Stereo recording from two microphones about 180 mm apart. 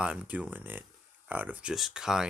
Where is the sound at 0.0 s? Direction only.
5° right (ahead or behind).